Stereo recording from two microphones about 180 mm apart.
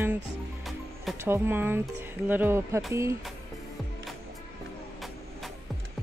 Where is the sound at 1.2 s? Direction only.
15° right (ahead or behind).